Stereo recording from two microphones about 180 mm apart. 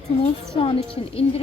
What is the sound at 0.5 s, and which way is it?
Speech, 30° left (ahead or behind).